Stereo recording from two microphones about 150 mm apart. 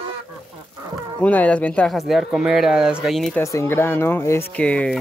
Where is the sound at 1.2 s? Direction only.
10° left (ahead or behind).